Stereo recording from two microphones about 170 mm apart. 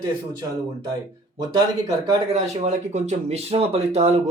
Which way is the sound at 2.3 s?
40° right (ahead or behind).